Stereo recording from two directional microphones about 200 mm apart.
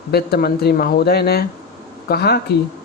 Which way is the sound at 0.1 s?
50° left (ahead or behind).